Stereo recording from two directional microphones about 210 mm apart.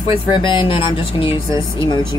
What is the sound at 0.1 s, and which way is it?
Speech, 25° left (ahead or behind).